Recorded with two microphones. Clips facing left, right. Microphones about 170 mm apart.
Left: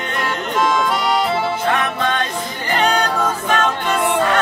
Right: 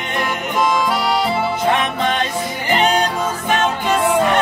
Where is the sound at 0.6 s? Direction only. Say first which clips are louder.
Even; centre (ahead or behind).